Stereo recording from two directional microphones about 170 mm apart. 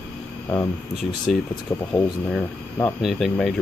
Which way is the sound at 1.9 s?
15° left (ahead or behind).